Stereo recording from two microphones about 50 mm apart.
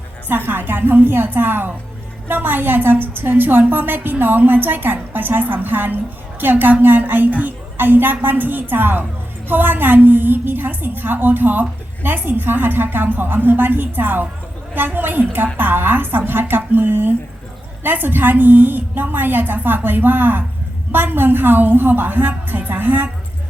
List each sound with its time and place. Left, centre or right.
0.3 s a woman's voice: right